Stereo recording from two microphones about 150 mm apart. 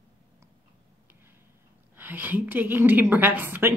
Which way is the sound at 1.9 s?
15° right (ahead or behind).